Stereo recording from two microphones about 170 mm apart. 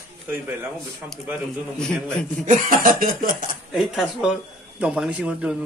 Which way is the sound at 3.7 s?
Centre (ahead or behind).